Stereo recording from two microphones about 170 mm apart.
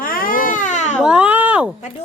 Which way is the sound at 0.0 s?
55° left (ahead or behind).